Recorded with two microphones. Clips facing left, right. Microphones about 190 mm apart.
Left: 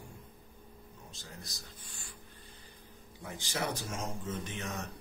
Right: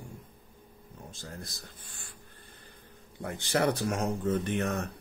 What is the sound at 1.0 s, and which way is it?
Speech, 50° right (ahead or behind).